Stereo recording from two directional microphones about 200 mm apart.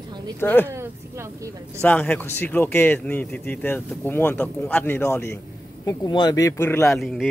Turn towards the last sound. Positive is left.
turn(degrees=0)  # may be behind; listen again after turning